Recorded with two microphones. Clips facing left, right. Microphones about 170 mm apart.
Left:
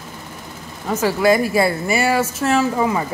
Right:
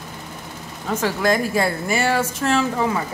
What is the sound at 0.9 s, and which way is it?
Speech, 10° left (ahead or behind).